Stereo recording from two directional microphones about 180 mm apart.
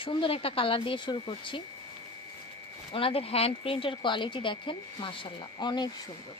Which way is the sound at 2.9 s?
30° left (ahead or behind).